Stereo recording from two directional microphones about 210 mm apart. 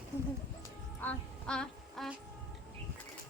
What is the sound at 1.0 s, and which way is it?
Music, 5° left (ahead or behind).